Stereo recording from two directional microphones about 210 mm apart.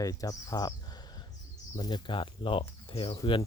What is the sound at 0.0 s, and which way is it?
Speech, 15° left (ahead or behind).